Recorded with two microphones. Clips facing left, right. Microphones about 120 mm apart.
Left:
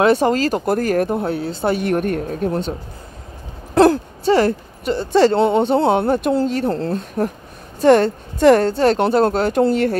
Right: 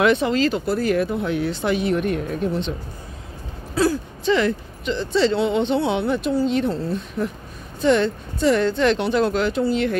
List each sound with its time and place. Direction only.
0.0 s speech: 40° left (ahead or behind)
1.8 s speech: 50° left (ahead or behind)
3.7 s speech: 60° left (ahead or behind)
4.3 s speech: 45° left (ahead or behind)
6.7 s speech: 60° left (ahead or behind)